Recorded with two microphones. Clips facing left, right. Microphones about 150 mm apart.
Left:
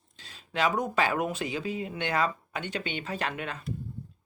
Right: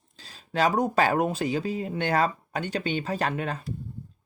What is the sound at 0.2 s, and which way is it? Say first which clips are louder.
Speech: right 4 dB; 35° right (ahead or behind).